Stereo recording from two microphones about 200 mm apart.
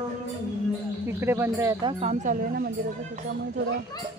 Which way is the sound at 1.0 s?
10° right (ahead or behind).